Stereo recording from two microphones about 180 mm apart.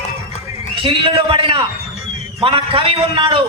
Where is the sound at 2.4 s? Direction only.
30° right (ahead or behind).